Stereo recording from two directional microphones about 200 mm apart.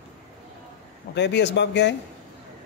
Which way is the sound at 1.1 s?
60° left (ahead or behind).